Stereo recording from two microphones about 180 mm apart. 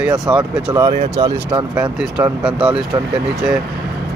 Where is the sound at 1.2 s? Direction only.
20° right (ahead or behind).